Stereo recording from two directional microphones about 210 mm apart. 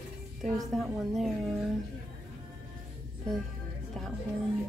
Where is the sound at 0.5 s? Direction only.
Centre (ahead or behind).